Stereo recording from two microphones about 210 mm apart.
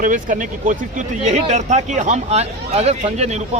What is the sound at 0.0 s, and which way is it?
Speech, 40° right (ahead or behind).